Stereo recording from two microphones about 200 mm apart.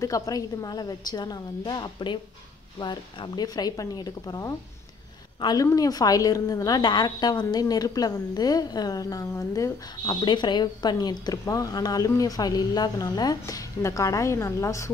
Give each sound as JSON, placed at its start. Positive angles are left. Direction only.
{"t": 0.0, "sound": "a woman's voice", "side_deg": 15}